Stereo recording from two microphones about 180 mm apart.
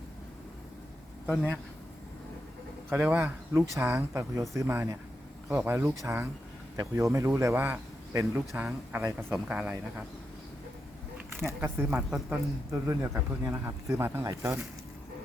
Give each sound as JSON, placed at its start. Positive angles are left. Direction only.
{"t": 1.3, "sound": "a man's voice", "side_deg": 0}
{"t": 2.9, "sound": "speech", "side_deg": -10}
{"t": 11.3, "sound": "speech", "side_deg": -15}